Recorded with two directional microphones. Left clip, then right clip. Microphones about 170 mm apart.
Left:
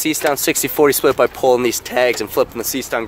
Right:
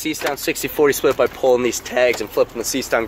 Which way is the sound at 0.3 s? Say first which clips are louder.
Left 5 dB; 50° left (ahead or behind).